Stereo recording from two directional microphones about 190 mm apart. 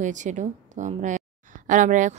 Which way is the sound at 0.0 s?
40° right (ahead or behind).